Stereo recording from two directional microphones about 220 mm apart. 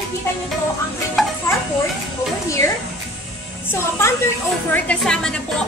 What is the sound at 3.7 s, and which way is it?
Music, 10° left (ahead or behind).